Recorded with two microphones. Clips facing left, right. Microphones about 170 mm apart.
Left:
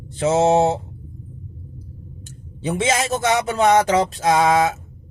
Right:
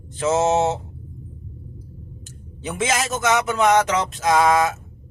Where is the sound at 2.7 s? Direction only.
30° left (ahead or behind).